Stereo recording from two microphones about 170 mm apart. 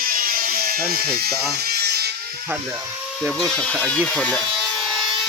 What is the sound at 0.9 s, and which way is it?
Speech, 65° right (ahead or behind).